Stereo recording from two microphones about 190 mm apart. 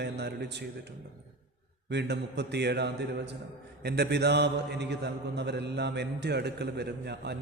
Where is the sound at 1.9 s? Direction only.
65° right (ahead or behind).